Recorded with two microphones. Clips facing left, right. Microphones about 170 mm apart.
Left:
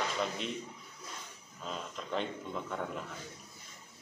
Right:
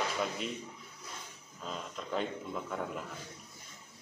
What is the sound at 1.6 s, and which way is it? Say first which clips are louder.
Speech: even; centre (ahead or behind).